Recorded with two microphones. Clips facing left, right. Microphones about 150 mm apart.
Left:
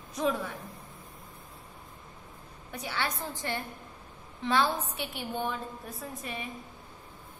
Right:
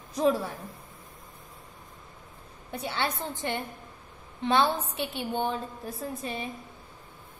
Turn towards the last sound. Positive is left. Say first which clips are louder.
# right 5 dB
turn(degrees=-30)  # may be behind; listen again after turning